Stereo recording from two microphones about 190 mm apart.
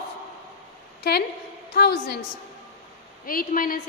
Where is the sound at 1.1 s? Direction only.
60° left (ahead or behind).